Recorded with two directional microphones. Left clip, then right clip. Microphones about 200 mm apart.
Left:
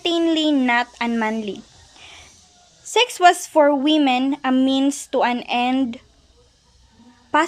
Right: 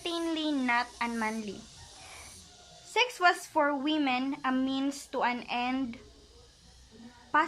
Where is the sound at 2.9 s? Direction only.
40° left (ahead or behind).